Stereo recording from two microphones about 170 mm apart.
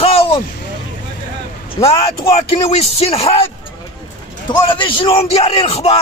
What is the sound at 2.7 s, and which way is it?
Speech, 35° left (ahead or behind).